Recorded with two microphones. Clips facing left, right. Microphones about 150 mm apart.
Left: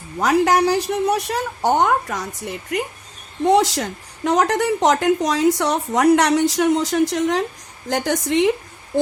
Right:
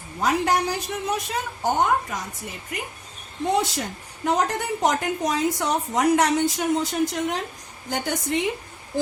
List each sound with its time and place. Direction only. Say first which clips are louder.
0.2 s a woman's voice: left 6 dB; 85° left
3.5 s a woman's voice: left 7 dB; 85° left